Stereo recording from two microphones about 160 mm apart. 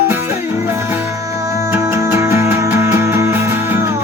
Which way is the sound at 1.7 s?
15° right (ahead or behind).